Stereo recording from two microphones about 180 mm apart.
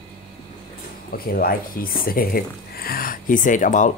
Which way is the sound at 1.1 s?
55° left (ahead or behind).